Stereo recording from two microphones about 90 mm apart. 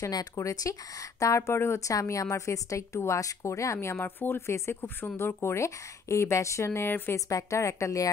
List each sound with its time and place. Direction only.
0.0 s a woman's voice: 40° left (ahead or behind)
7.2 s a woman's voice: 40° left (ahead or behind)